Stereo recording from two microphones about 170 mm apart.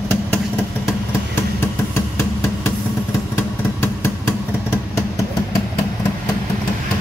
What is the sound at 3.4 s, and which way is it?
Vehicle, 15° left (ahead or behind).